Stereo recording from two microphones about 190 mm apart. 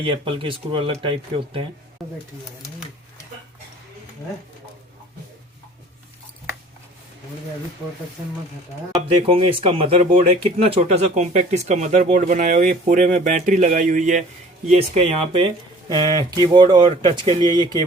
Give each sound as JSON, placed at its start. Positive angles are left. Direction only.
{"t": 0.0, "sound": "speech", "side_deg": -30}
{"t": 2.0, "sound": "speech", "side_deg": 0}
{"t": 9.0, "sound": "speech", "side_deg": -30}